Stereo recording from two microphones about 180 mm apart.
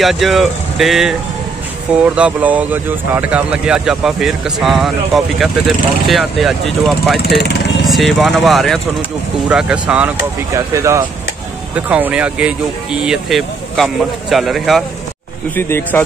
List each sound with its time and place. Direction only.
0.0 s speech: centre (ahead or behind)
2.1 s speech: 5° right (ahead or behind)
7.2 s speech: 65° left (ahead or behind)
7.9 s speech: centre (ahead or behind)
15.5 s speech: 10° left (ahead or behind)